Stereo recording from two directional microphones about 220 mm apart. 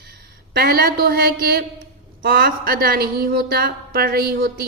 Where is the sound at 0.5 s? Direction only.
45° right (ahead or behind).